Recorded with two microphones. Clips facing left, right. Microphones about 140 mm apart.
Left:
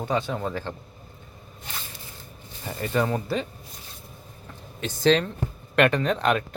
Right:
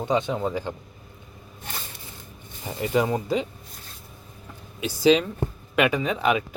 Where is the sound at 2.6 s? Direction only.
15° right (ahead or behind).